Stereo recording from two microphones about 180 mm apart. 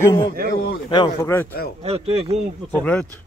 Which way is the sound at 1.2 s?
10° left (ahead or behind).